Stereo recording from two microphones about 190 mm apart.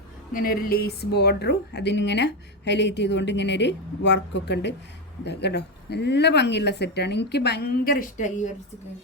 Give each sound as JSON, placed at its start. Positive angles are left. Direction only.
{"t": 0.3, "sound": "a woman's voice", "side_deg": 50}